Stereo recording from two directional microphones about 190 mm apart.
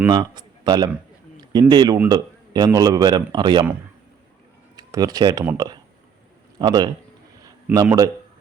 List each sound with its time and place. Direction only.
0.1 s a man's voice: 20° right (ahead or behind)
4.8 s speech: 20° right (ahead or behind)
6.6 s a man's voice: 20° right (ahead or behind)
7.4 s a sound: 20° right (ahead or behind)